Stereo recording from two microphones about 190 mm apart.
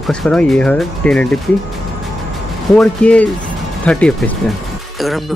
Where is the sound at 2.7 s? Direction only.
5° left (ahead or behind).